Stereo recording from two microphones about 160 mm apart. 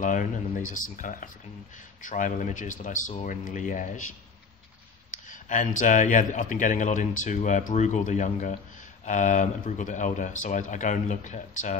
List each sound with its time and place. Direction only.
0.0 s speech: 55° left (ahead or behind)
5.1 s speech: 50° left (ahead or behind)